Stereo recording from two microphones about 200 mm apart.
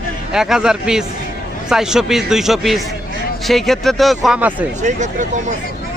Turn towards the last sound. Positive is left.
turn(degrees=-40)  # may be behind; listen again after turning